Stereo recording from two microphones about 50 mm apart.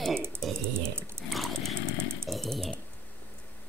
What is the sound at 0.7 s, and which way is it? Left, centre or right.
Dog, right.